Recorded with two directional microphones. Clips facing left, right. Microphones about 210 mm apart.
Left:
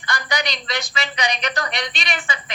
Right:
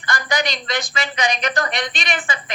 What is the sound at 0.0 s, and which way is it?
A man's voice, 50° right (ahead or behind).